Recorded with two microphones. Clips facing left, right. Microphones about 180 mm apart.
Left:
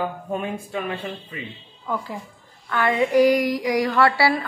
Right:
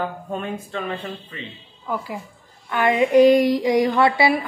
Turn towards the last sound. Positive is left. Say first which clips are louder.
# right 1 dB
turn(degrees=-15)  # may be behind; listen again after turning